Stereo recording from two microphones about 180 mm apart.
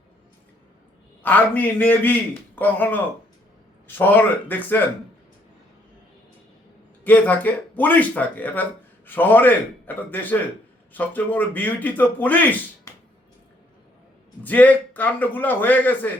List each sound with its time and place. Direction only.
1.2 s a man's voice: 10° left (ahead or behind)
7.0 s a man's voice: 10° left (ahead or behind)
14.4 s a man's voice: 10° left (ahead or behind)